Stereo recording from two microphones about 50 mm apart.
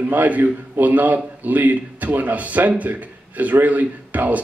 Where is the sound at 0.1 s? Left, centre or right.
Right.